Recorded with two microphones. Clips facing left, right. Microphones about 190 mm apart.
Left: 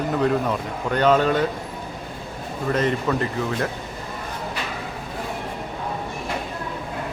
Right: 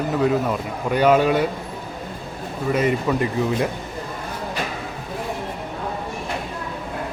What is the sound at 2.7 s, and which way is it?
Speech, 10° right (ahead or behind).